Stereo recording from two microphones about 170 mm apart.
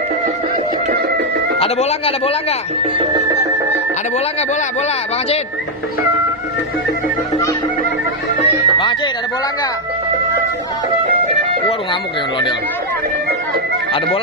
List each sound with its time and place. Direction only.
1.6 s speech: 35° left (ahead or behind)
8.4 s music: 30° left (ahead or behind)
11.9 s speech: 30° left (ahead or behind)